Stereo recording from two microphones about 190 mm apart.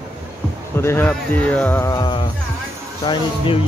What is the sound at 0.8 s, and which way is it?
Speech, 10° left (ahead or behind).